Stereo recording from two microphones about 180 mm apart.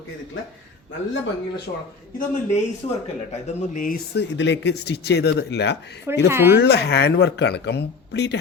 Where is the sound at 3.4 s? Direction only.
45° left (ahead or behind); by 5.7 s 70° left (ahead or behind).